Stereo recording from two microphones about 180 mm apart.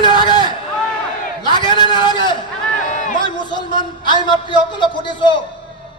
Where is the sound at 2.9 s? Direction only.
45° left (ahead or behind).